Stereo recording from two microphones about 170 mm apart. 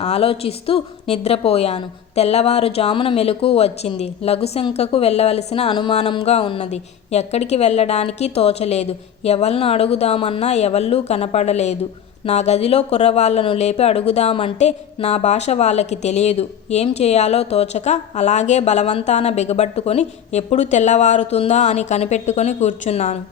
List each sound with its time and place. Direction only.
0.0 s speech: 35° left (ahead or behind)